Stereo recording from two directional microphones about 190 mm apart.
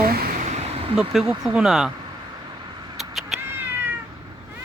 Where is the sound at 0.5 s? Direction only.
35° right (ahead or behind).